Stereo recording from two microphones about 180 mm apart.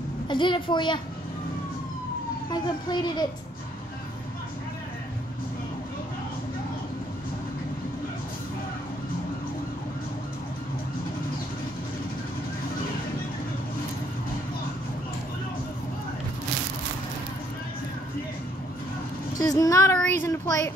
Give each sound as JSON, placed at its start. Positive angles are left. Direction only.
{"t": 0.3, "sound": "a child's voice", "side_deg": 25}
{"t": 2.5, "sound": "a child's voice", "side_deg": 25}
{"t": 19.3, "sound": "a sound", "side_deg": 20}